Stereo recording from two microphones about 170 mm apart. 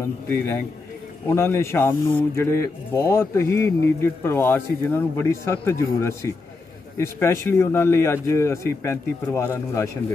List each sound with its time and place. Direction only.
0.0 s speech: 15° left (ahead or behind)